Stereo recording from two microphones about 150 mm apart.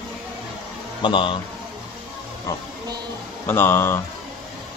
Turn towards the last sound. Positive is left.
turn(degrees=15)  # may be behind; listen again after turning